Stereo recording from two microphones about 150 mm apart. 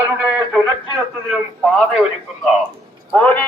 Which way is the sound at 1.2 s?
Centre (ahead or behind).